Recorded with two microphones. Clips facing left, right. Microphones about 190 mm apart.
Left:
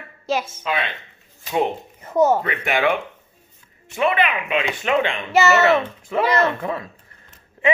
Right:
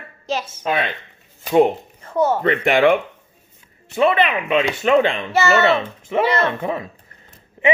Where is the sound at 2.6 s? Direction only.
50° right (ahead or behind).